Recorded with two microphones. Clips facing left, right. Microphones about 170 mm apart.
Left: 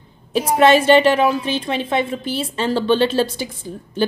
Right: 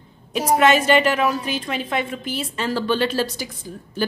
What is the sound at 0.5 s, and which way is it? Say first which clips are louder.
A woman's voice: left 4 dB; 30° left (ahead or behind).